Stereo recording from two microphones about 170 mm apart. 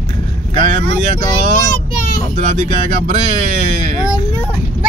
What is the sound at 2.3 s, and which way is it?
Speech, 45° right (ahead or behind).